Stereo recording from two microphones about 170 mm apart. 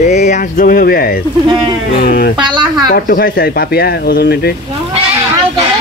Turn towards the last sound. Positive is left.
turn(degrees=70)  # may be behind; listen again after turning